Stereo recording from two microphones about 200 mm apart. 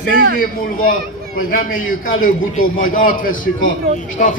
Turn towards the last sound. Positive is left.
turn(degrees=40)  # may be behind; listen again after turning